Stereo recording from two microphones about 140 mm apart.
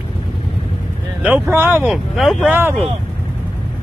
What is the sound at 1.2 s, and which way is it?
Speech, 10° right (ahead or behind).